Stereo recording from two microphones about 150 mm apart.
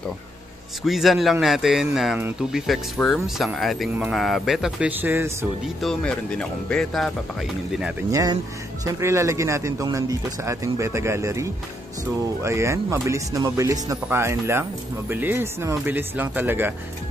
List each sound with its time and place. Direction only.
0.8 s speech: centre (ahead or behind)
5.8 s speech: 5° left (ahead or behind)
8.1 s speech: 25° right (ahead or behind)